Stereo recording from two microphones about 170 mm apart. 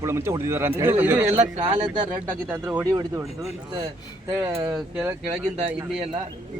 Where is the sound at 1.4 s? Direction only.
35° right (ahead or behind).